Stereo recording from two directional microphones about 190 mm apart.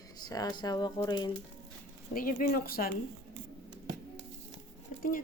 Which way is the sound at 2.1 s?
45° left (ahead or behind).